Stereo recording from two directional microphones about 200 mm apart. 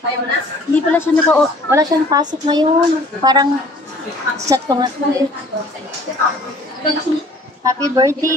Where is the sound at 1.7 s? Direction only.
20° right (ahead or behind).